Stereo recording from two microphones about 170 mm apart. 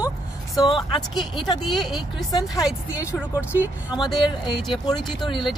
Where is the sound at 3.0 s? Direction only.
15° left (ahead or behind).